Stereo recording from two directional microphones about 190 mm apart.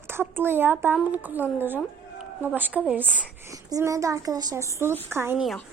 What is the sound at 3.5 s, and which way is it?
A woman's voice, 20° right (ahead or behind).